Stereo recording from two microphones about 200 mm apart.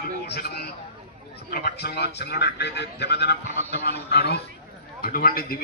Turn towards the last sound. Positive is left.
turn(degrees=45)  # may be behind; listen again after turning